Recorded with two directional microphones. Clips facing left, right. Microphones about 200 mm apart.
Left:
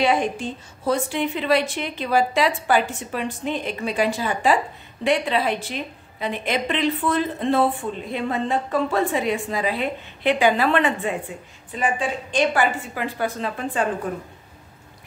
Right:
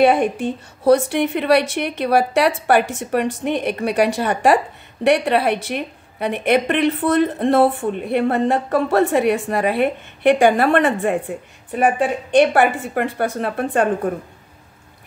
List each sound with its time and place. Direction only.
0.0 s a woman's voice: 60° right (ahead or behind)
10.4 s a woman's voice: 50° right (ahead or behind)